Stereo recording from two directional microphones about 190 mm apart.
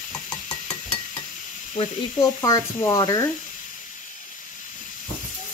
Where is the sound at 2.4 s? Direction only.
20° left (ahead or behind).